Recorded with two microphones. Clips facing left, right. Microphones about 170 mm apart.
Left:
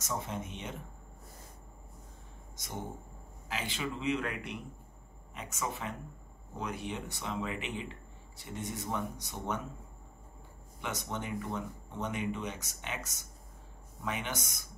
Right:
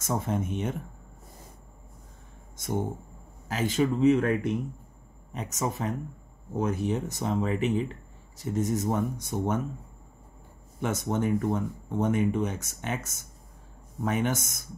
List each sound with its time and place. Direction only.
0.0 s speech: 50° right (ahead or behind)
2.5 s a sound: 50° right (ahead or behind)
3.4 s speech: 45° right (ahead or behind)
10.8 s speech: 50° right (ahead or behind)